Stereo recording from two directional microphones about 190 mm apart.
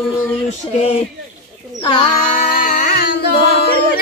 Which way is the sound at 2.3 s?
45° left (ahead or behind).